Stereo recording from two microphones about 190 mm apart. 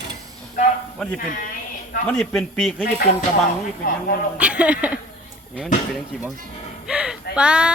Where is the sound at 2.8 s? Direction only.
50° left (ahead or behind).